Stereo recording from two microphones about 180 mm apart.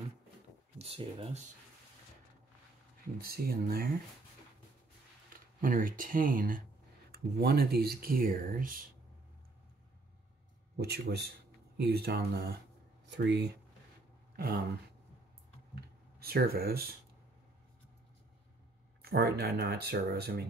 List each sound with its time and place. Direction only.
0.7 s speech: 35° right (ahead or behind)
3.2 s speech: 55° right (ahead or behind)
5.6 s speech: 50° right (ahead or behind)
10.8 s speech: 65° right (ahead or behind)
13.0 s speech: 75° right (ahead or behind)
14.3 s a sound: 55° right (ahead or behind)
15.7 s a sound: 60° right (ahead or behind)
19.0 s speech: 60° right (ahead or behind)